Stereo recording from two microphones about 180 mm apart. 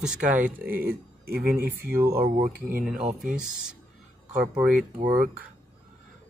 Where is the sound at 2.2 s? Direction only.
50° right (ahead or behind).